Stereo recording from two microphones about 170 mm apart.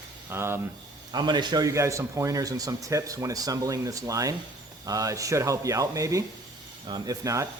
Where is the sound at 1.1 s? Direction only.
25° right (ahead or behind).